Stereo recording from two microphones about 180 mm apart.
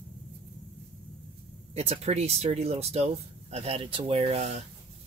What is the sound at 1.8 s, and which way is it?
Speech, 35° right (ahead or behind).